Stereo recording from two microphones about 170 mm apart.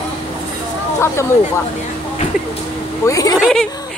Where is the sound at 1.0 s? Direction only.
15° left (ahead or behind).